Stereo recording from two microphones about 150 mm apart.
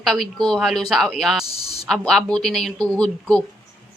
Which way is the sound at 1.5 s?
40° left (ahead or behind).